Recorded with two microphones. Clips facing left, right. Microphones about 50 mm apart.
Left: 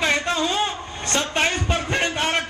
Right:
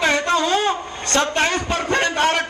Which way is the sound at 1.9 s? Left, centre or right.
Right.